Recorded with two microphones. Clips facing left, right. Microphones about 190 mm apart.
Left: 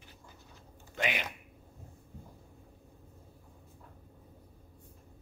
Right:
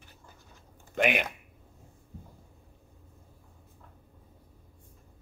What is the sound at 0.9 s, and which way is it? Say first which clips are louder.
Speech: right 8 dB; 55° right (ahead or behind).